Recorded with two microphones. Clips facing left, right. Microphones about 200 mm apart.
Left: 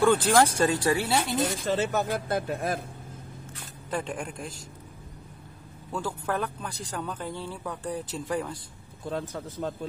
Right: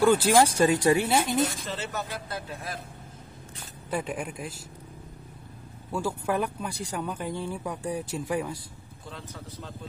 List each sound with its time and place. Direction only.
0.0 s speech: 10° right (ahead or behind)
1.7 s speech: 50° left (ahead or behind)
3.9 s speech: 5° right (ahead or behind)
5.9 s speech: 10° right (ahead or behind)
9.1 s speech: 50° left (ahead or behind)